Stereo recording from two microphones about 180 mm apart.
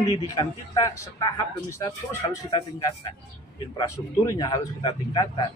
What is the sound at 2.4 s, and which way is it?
A man's voice, 25° left (ahead or behind).